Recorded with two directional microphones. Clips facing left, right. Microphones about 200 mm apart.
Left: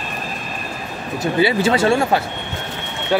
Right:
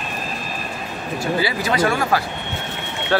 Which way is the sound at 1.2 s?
25° left (ahead or behind).